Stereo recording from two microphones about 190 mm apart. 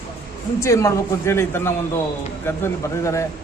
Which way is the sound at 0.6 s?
15° left (ahead or behind).